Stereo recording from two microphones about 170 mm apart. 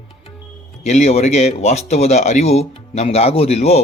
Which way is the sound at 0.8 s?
40° left (ahead or behind).